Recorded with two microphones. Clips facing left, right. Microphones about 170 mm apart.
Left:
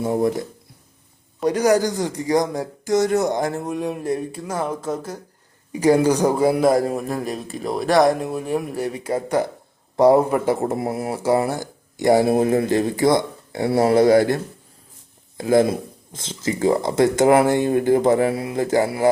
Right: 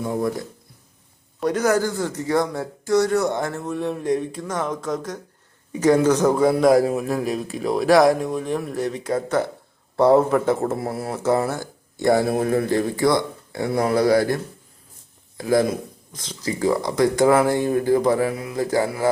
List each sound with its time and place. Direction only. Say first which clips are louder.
0.0 s speech: left 4 dB; 20° left (ahead or behind)
1.4 s a man's voice: left 2 dB; 10° left (ahead or behind)
5.8 s a man's voice: even; 10° left (ahead or behind)
15.4 s speech: left 3 dB; 25° left (ahead or behind)